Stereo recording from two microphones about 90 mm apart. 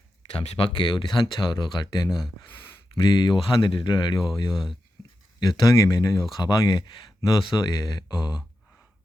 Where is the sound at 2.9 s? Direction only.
60° left (ahead or behind).